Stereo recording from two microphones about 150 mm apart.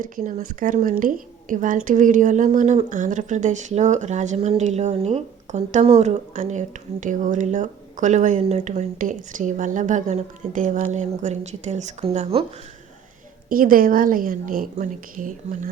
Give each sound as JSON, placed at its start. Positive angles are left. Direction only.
{"t": 0.0, "sound": "a woman's voice", "side_deg": -60}
{"t": 13.5, "sound": "a woman's voice", "side_deg": -70}